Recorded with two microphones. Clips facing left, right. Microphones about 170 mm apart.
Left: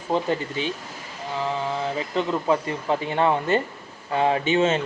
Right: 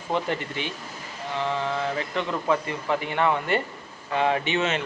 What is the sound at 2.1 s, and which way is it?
Speech, 25° left (ahead or behind).